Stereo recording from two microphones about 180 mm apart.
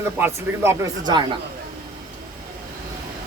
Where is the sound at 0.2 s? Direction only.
15° right (ahead or behind).